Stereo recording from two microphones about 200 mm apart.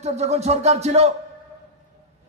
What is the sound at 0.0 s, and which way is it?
A man's voice, 35° right (ahead or behind).